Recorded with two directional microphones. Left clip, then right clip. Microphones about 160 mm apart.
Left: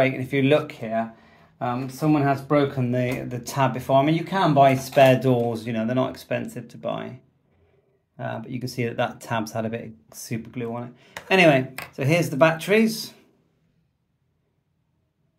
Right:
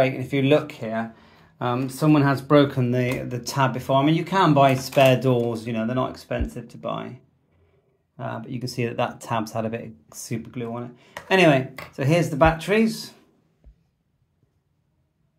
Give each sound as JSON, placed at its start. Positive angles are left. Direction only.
{"t": 0.0, "sound": "speech", "side_deg": 0}
{"t": 0.8, "sound": "speech", "side_deg": -20}
{"t": 1.6, "sound": "speech", "side_deg": -40}
{"t": 2.8, "sound": "speech", "side_deg": -20}